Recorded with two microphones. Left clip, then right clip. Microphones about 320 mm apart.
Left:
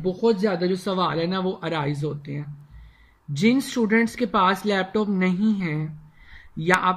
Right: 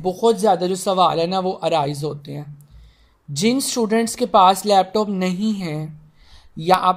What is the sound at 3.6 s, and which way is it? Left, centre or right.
Speech, centre.